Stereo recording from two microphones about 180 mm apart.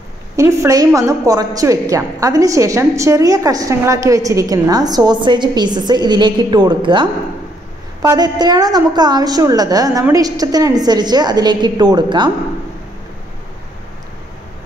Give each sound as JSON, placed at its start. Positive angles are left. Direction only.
{"t": 0.4, "sound": "a woman's voice", "side_deg": -15}